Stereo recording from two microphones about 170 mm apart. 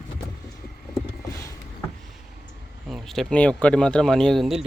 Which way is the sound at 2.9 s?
Centre (ahead or behind).